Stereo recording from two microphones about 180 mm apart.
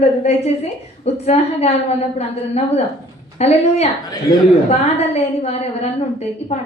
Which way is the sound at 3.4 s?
35° left (ahead or behind).